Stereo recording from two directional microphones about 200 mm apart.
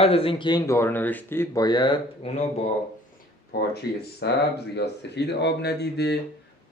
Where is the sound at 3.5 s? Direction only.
55° left (ahead or behind).